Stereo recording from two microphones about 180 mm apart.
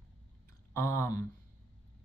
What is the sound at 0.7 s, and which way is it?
Speech, 15° left (ahead or behind).